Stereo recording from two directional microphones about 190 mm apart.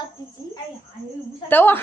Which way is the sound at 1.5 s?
10° left (ahead or behind).